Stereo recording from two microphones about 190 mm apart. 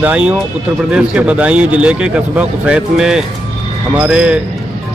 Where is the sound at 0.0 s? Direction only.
5° right (ahead or behind).